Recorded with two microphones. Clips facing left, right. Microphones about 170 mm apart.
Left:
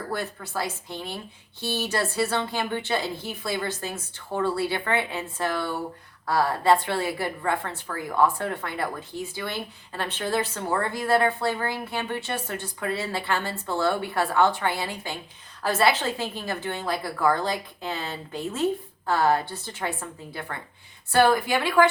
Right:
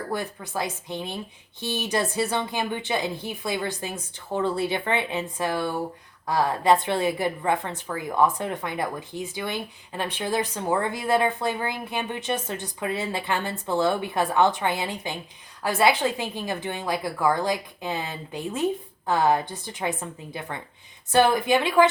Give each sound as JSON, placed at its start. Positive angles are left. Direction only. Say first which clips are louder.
{"t": 0.1, "sound": "a woman's voice", "louder": "even", "side_deg": -15}